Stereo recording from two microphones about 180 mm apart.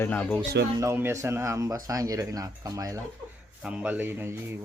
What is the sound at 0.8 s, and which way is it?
Speech, 15° right (ahead or behind).